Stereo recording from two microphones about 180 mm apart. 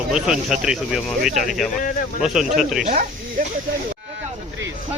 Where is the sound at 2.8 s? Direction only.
50° right (ahead or behind).